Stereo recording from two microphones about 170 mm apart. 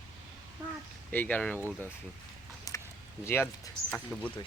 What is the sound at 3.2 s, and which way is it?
Speech, 15° left (ahead or behind).